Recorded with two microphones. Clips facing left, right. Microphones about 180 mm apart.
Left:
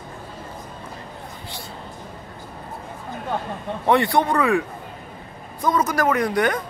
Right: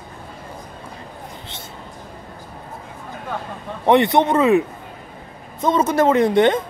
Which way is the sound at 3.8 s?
20° right (ahead or behind).